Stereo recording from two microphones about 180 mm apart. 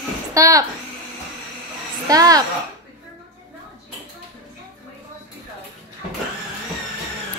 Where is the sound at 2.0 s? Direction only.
20° right (ahead or behind).